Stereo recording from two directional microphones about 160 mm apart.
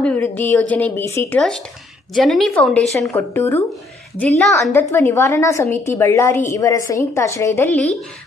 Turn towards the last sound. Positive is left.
turn(degrees=10)  # may be behind; listen again after turning